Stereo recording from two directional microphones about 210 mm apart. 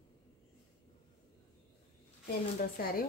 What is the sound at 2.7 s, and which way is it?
Speech, 45° left (ahead or behind).